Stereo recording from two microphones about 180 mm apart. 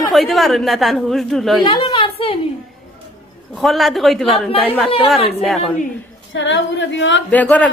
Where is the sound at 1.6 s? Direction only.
30° left (ahead or behind).